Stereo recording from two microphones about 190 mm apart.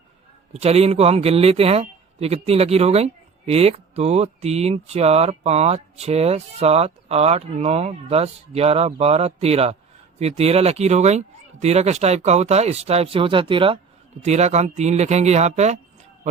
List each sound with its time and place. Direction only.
0.5 s a man's voice: 35° right (ahead or behind)